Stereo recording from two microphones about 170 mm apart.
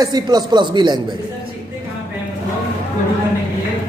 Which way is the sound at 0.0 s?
25° right (ahead or behind).